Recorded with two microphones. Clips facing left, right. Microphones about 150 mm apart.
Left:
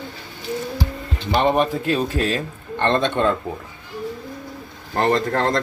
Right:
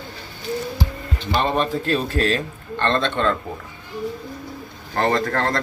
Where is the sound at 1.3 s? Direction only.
15° left (ahead or behind).